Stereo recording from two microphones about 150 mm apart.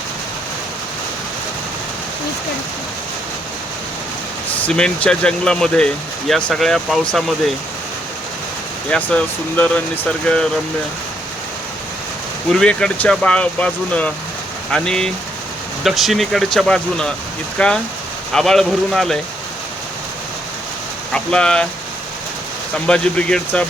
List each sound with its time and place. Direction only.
4.5 s speech: 10° left (ahead or behind)
8.9 s speech: 10° left (ahead or behind)
12.5 s speech: 5° left (ahead or behind)
21.1 s speech: 5° left (ahead or behind)
22.9 s speech: 5° left (ahead or behind)